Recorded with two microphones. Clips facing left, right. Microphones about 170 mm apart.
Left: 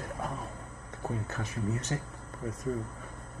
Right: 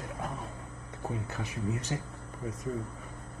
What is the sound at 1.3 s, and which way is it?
Speech, 15° right (ahead or behind).